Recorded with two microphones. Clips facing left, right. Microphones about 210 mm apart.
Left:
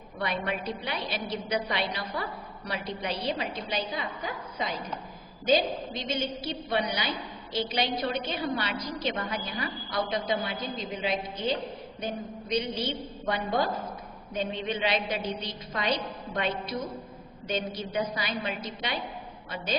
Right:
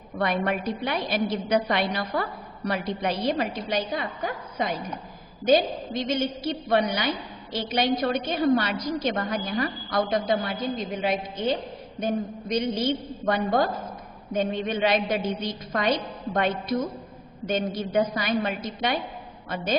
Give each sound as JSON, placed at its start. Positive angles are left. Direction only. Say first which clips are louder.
{"t": 0.2, "sound": "a woman's voice", "louder": "right 6 dB", "side_deg": -55}